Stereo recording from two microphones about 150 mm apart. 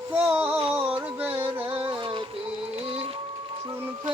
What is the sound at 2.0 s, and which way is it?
Music, 35° right (ahead or behind).